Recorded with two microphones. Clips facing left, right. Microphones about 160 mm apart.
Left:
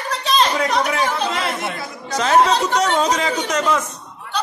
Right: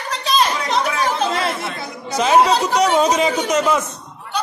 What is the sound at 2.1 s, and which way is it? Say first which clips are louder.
A man's voice: right 1 dB; 10° right (ahead or behind).